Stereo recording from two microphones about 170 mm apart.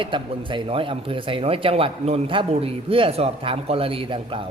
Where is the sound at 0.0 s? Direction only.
30° right (ahead or behind).